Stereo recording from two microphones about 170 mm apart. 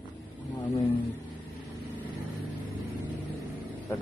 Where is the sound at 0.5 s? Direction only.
10° left (ahead or behind).